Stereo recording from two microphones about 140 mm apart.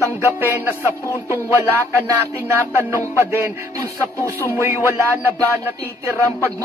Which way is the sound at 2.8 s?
20° right (ahead or behind).